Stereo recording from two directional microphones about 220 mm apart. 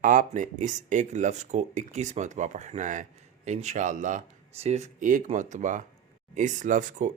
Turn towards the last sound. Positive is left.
turn(degrees=-35)  # may be behind; listen again after turning